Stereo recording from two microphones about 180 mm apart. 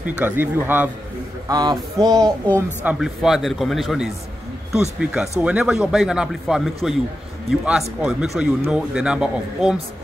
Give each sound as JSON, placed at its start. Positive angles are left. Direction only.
{"t": 0.1, "sound": "a man's voice", "side_deg": -10}
{"t": 1.5, "sound": "a sound", "side_deg": -20}
{"t": 2.5, "sound": "speech", "side_deg": -10}